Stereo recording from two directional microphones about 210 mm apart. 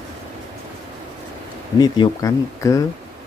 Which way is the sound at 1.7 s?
20° left (ahead or behind).